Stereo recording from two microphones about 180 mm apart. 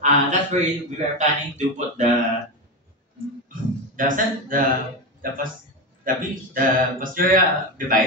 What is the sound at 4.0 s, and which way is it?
Speech, 50° right (ahead or behind).